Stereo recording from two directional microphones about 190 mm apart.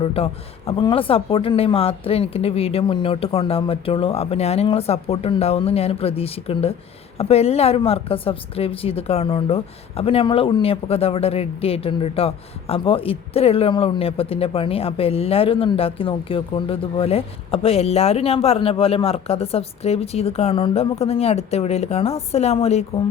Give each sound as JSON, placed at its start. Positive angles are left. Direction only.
{"t": 0.0, "sound": "a man's voice", "side_deg": 30}